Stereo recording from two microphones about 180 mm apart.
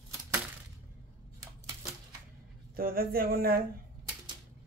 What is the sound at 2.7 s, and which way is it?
Speech, 55° right (ahead or behind).